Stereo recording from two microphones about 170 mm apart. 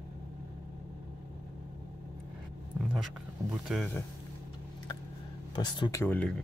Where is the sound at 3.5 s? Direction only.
Centre (ahead or behind).